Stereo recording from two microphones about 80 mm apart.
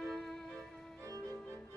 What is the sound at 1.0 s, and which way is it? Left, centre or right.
Music, right.